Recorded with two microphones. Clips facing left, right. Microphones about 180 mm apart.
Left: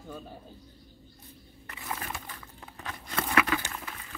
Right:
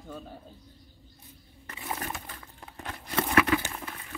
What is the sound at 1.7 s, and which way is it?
Crushing, 25° right (ahead or behind).